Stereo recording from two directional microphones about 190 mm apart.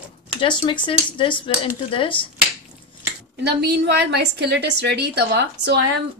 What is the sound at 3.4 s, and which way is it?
A woman's voice, 60° right (ahead or behind).